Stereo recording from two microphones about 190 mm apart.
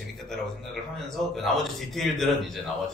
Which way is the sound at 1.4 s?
Centre (ahead or behind).